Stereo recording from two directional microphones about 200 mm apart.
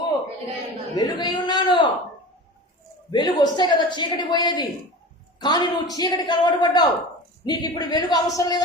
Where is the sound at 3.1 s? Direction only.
20° left (ahead or behind).